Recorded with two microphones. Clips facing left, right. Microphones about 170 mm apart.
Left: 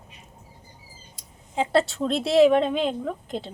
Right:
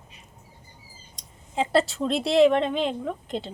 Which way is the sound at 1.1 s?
Centre (ahead or behind).